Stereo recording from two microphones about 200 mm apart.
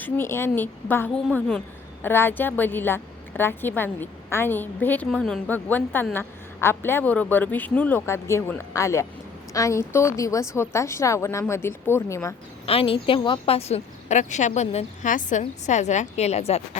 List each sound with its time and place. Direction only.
0.0 s a woman's voice: 10° left (ahead or behind)
12.6 s a woman's voice: 30° left (ahead or behind)